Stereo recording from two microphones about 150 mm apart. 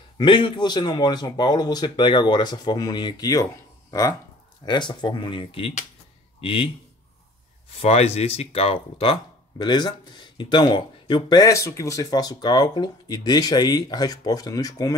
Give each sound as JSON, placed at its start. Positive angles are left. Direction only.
{"t": 0.2, "sound": "speech", "side_deg": 30}
{"t": 4.6, "sound": "speech", "side_deg": 30}
{"t": 7.8, "sound": "speech", "side_deg": 45}
{"t": 9.6, "sound": "speech", "side_deg": 30}